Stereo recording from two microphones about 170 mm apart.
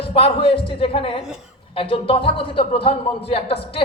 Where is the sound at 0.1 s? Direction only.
35° left (ahead or behind).